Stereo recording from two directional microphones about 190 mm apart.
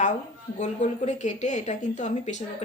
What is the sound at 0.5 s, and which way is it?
Speech, 40° left (ahead or behind).